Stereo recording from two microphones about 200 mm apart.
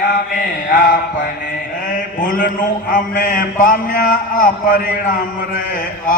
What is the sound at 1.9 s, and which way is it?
Mantra, 40° left (ahead or behind).